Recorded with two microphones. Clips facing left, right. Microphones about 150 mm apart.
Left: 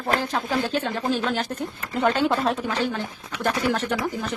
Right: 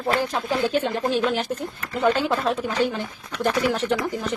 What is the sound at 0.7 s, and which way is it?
Speech, 10° right (ahead or behind).